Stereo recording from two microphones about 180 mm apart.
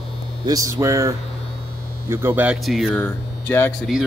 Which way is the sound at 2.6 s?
Centre (ahead or behind).